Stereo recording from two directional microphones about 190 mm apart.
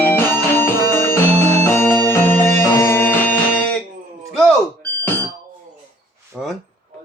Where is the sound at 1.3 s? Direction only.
35° right (ahead or behind).